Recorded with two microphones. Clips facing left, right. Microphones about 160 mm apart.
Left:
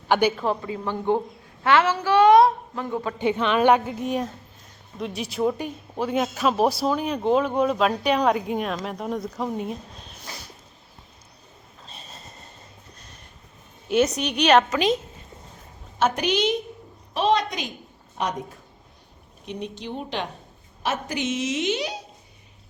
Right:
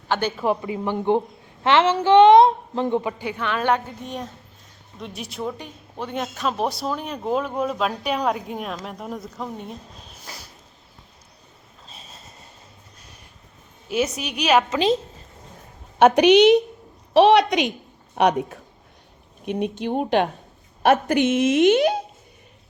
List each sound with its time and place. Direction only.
0.1 s a woman's voice: 10° left (ahead or behind)
0.3 s a woman's voice: 15° right (ahead or behind)
3.2 s a woman's voice: 20° left (ahead or behind); by 9.7 s 5° left (ahead or behind)
11.9 s a sound: centre (ahead or behind)
13.8 s speech: 5° right (ahead or behind)
14.7 s a woman's voice: 30° right (ahead or behind)
16.0 s a woman's voice: 70° right (ahead or behind)
19.5 s a woman's voice: 55° right (ahead or behind)